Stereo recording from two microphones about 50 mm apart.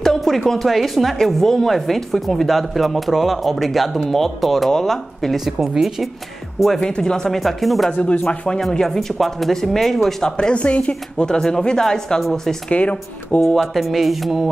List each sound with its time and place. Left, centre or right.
0.0 s a sound: centre
0.5 s a woman's voice: centre
5.4 s speech: centre
6.9 s a woman's voice: centre
7.3 s speech: centre
7.9 s speech: left
8.8 s speech: centre
10.3 s a woman's voice: left; by 12.5 s centre
12.6 s speech: left
13.6 s speech: centre